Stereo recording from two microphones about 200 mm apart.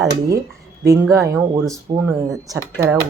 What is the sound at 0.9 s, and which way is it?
Speech, 15° right (ahead or behind).